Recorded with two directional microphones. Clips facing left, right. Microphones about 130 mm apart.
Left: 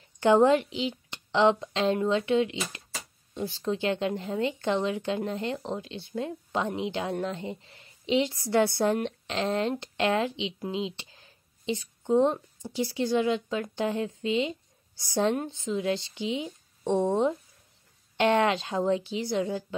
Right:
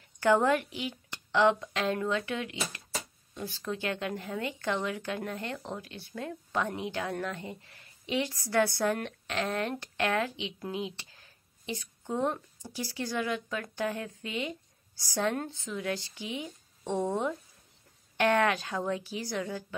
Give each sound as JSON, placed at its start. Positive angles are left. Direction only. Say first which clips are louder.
{"t": 0.2, "sound": "a woman's voice", "louder": "left 5 dB", "side_deg": 20}